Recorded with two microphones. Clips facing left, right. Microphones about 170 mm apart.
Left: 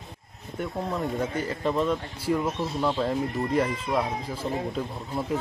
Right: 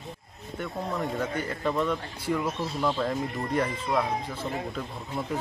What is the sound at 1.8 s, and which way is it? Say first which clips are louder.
Speech: left 2 dB; 30° left (ahead or behind).